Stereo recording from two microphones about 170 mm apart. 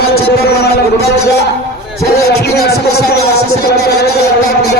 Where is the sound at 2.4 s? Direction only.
70° left (ahead or behind).